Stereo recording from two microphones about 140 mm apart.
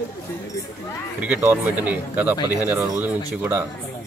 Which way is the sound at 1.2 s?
10° right (ahead or behind).